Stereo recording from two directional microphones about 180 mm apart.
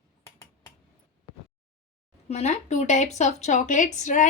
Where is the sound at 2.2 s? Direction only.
40° left (ahead or behind).